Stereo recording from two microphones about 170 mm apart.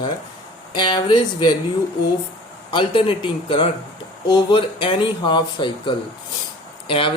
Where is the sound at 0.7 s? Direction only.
25° left (ahead or behind).